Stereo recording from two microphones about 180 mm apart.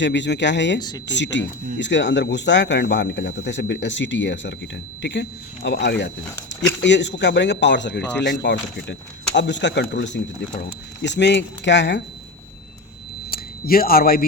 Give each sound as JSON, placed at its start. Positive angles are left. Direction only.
{"t": 0.0, "sound": "speech", "side_deg": 90}
{"t": 0.8, "sound": "speech", "side_deg": 20}
{"t": 1.0, "sound": "speech", "side_deg": 85}
{"t": 13.3, "sound": "speech", "side_deg": 55}